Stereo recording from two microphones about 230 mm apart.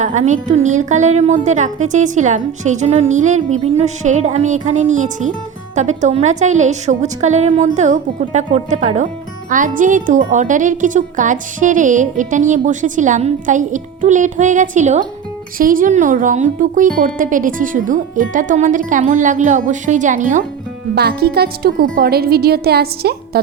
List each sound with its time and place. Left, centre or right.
0.0 s a woman's voice: right
20.9 s a woman's voice: right